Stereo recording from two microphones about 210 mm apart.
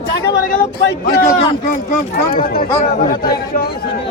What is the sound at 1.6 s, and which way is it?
Speech, 45° left (ahead or behind).